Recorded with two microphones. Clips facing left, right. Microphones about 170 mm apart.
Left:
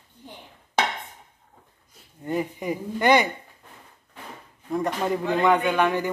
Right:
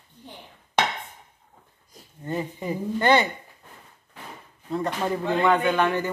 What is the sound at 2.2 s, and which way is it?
Speech, 15° left (ahead or behind).